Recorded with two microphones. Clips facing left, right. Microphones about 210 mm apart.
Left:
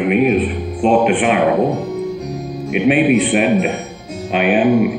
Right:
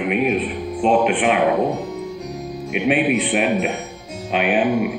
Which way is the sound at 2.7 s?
Centre (ahead or behind).